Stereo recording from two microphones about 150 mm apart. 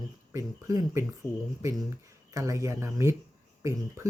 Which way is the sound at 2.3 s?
20° right (ahead or behind).